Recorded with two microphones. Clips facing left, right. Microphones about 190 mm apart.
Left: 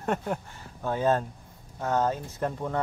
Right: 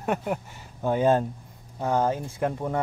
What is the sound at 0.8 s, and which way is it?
Speech, 15° right (ahead or behind).